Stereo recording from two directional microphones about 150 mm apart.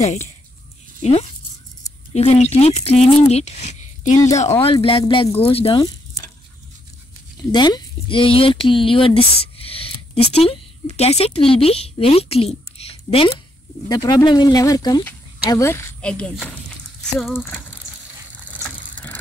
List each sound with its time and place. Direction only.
0.0 s speech: 50° left (ahead or behind)
2.1 s speech: 45° left (ahead or behind)
4.6 s speech: 35° left (ahead or behind)
7.3 s speech: 30° left (ahead or behind)
13.8 s speech: 25° left (ahead or behind)
16.0 s speech: 5° left (ahead or behind)